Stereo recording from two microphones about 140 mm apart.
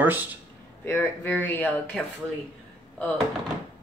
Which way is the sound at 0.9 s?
15° left (ahead or behind).